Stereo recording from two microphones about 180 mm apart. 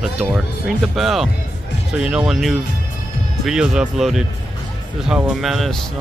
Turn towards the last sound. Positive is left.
turn(degrees=0)  # may be behind; listen again after turning